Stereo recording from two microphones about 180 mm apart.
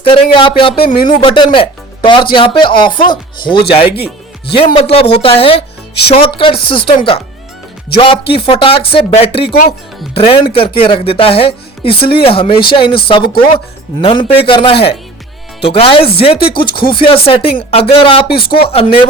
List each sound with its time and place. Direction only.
0.0 s speech: 30° left (ahead or behind)